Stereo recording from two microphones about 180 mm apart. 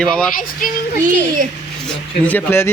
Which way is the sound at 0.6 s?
50° left (ahead or behind).